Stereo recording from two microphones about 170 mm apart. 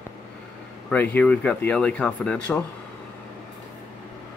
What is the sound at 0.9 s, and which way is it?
Speech, 10° left (ahead or behind).